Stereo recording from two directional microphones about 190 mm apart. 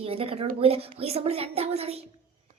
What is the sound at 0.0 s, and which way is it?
Speech, 30° right (ahead or behind).